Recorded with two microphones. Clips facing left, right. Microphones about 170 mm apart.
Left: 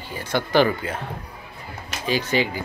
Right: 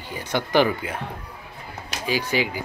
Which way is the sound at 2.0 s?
10° right (ahead or behind).